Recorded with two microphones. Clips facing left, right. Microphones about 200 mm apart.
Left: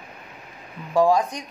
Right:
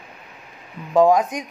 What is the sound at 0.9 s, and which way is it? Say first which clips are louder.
Speech: right 3 dB; 20° right (ahead or behind).